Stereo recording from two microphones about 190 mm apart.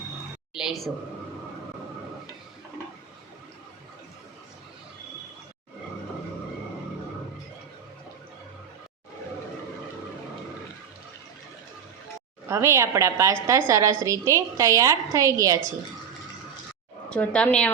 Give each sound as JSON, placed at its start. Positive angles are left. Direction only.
{"t": 0.5, "sound": "a woman's voice", "side_deg": -5}
{"t": 12.5, "sound": "a woman's voice", "side_deg": -15}
{"t": 17.1, "sound": "a woman's voice", "side_deg": 5}